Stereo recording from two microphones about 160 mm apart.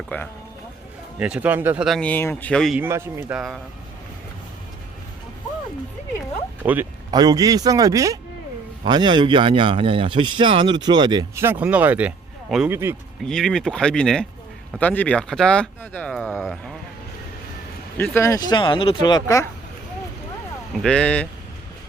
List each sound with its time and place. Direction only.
0.1 s speech: 10° left (ahead or behind)
1.2 s speech: 10° right (ahead or behind)
2.7 s speech: 15° right (ahead or behind)
6.6 s speech: 10° right (ahead or behind)
7.1 s speech: 25° right (ahead or behind)
11.3 s speech: 15° right (ahead or behind)
13.2 s speech: 5° left (ahead or behind)
16.3 s speech: centre (ahead or behind)
17.9 s speech: 15° left (ahead or behind)
20.7 s speech: 5° left (ahead or behind)